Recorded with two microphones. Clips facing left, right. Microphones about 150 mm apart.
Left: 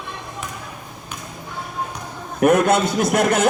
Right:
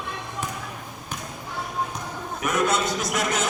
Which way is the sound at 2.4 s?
60° left (ahead or behind).